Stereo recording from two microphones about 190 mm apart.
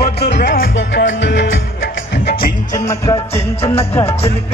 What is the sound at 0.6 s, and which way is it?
Music, 75° left (ahead or behind).